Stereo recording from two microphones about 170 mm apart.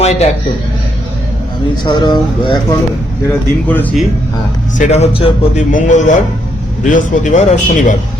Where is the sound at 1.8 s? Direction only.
25° left (ahead or behind).